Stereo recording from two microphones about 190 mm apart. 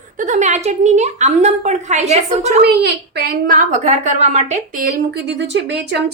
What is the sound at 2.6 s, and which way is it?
A woman's voice, 60° right (ahead or behind).